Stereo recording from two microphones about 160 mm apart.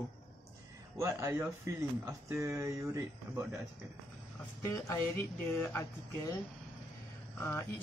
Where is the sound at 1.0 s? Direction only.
15° right (ahead or behind).